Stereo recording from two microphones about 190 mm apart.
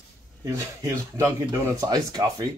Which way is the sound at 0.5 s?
15° right (ahead or behind).